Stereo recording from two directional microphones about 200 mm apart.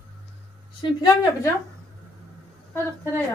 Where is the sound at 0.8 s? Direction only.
20° left (ahead or behind).